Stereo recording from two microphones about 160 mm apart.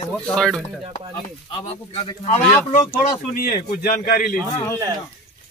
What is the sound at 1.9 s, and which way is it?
Speech, 40° left (ahead or behind).